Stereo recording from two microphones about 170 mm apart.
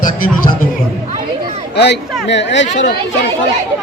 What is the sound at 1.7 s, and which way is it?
Speech, 80° left.